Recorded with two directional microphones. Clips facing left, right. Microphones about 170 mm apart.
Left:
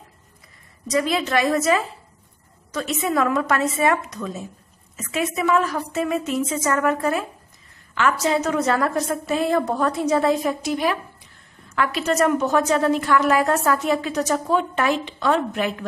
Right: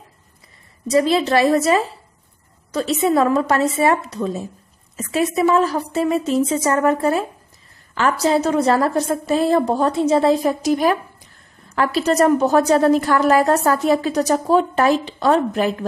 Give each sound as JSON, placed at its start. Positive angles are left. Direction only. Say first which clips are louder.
{"t": 0.8, "sound": "a woman's voice", "louder": "right 6 dB", "side_deg": -30}